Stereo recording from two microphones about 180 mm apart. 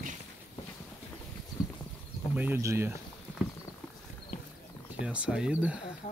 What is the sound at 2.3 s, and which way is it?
Speech, 10° right (ahead or behind).